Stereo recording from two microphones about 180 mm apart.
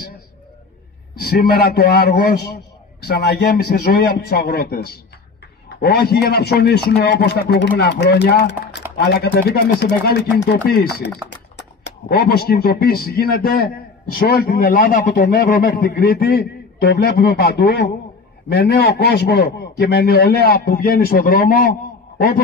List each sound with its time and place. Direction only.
1.2 s a man's voice: 60° left (ahead or behind)
12.1 s a man's voice: 60° left (ahead or behind)